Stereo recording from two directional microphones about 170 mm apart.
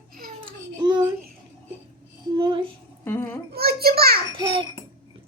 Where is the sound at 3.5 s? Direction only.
65° right (ahead or behind).